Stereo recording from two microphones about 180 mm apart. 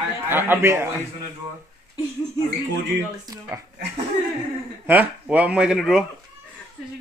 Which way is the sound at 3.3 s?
20° right (ahead or behind).